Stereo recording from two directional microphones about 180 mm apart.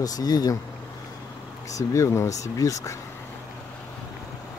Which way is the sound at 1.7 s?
20° left (ahead or behind).